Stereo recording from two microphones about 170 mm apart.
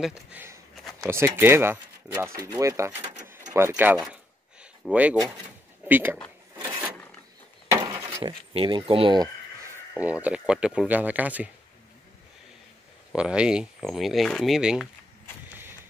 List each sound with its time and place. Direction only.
0.0 s speech: 5° right (ahead or behind)
3.5 s a sound: 15° right (ahead or behind)
5.9 s speech: 10° right (ahead or behind)
7.7 s a sound: 20° right (ahead or behind)
8.2 s speech: 30° right (ahead or behind)
9.9 s speech: 10° right (ahead or behind)
13.1 s speech: 5° right (ahead or behind)